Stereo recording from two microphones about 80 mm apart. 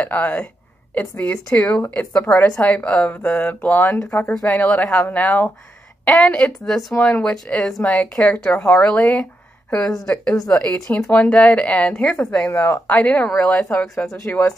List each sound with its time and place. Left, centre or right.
0.0 s speech: centre
4.3 s speech: centre
4.6 s a woman's voice: left
9.8 s a woman's voice: left
10.5 s speech: centre
11.2 s speech: centre